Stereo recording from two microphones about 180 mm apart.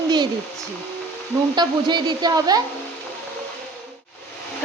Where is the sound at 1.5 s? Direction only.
25° right (ahead or behind).